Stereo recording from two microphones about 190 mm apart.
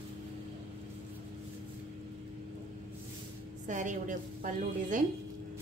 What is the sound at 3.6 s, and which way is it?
A woman's voice, 40° right (ahead or behind).